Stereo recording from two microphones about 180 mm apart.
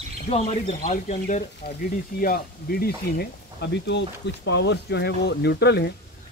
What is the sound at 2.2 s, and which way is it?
Speech, 55° left (ahead or behind).